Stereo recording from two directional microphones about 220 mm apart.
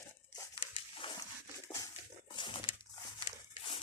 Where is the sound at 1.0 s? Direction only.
20° left (ahead or behind).